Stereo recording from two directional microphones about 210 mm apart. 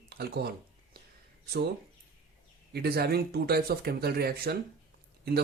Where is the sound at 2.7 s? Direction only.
50° right (ahead or behind).